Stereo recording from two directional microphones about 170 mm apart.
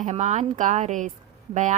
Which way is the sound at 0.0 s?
45° right (ahead or behind).